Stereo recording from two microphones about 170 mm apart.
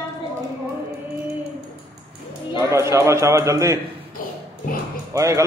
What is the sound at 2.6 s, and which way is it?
A man's voice, 15° right (ahead or behind).